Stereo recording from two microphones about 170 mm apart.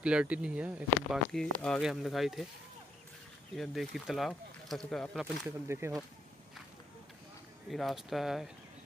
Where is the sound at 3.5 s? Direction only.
Centre (ahead or behind).